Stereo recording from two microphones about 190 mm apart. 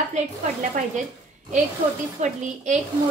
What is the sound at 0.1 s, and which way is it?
Speech, 40° right (ahead or behind).